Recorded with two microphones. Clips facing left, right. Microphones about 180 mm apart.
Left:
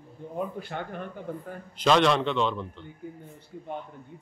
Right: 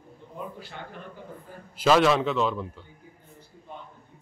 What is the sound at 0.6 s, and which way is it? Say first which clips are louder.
Speech: left 6 dB; 55° left (ahead or behind).